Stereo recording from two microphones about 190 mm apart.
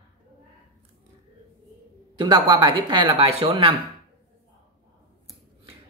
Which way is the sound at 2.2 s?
20° right (ahead or behind).